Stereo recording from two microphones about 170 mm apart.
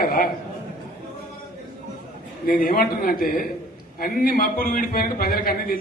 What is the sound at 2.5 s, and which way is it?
A man's voice, 55° left (ahead or behind).